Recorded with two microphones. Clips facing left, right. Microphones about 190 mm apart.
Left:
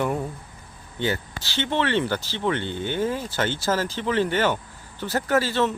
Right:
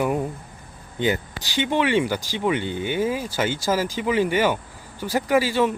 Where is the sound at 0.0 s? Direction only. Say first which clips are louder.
Right 2 dB; 10° right (ahead or behind).